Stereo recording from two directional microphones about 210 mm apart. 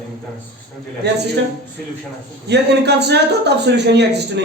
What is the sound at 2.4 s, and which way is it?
Speech, 55° right (ahead or behind).